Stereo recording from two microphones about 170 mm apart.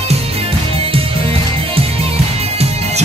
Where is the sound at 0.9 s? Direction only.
35° right (ahead or behind).